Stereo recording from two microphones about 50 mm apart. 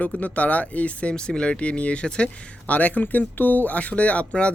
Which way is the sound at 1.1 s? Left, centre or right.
Centre.